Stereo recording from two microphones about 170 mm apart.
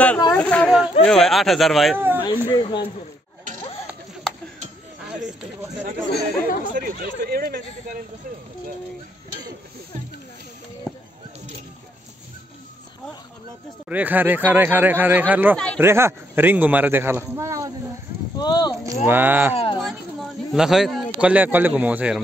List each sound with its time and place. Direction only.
0.3 s speech: 10° left (ahead or behind)
2.0 s a sound: 10° right (ahead or behind)
2.2 s speech: 25° left (ahead or behind)
6.1 s speech: 55° left (ahead or behind)
6.6 s speech: 55° right (ahead or behind)
10.9 s a sound: 5° left (ahead or behind)
13.8 s a man's voice: 10° right (ahead or behind)
15.5 s speech: 5° left (ahead or behind)
15.8 s a man's voice: 15° right (ahead or behind)
18.4 s speech: 25° left (ahead or behind)
19.0 s a man's voice: 10° right (ahead or behind)
19.5 s speech: 35° left (ahead or behind)
19.8 s speech: centre (ahead or behind)